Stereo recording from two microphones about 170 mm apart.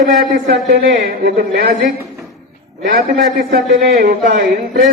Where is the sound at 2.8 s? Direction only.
50° right (ahead or behind).